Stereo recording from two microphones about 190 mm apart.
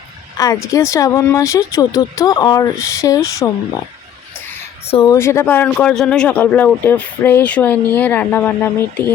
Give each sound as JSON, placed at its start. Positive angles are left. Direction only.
{"t": 0.3, "sound": "speech", "side_deg": 15}
{"t": 4.9, "sound": "speech", "side_deg": 25}
{"t": 5.1, "sound": "speech", "side_deg": 15}